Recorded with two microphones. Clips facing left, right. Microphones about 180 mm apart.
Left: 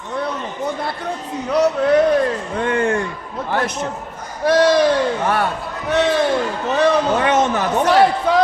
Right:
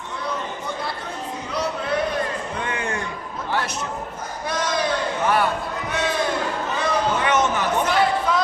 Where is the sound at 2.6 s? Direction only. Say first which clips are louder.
Left 12 dB; 60° left (ahead or behind).